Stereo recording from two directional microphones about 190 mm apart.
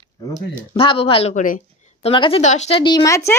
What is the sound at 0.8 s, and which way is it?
Speech, 30° left (ahead or behind).